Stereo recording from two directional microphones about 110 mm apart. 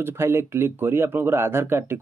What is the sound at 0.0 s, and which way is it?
Speech, 20° right (ahead or behind).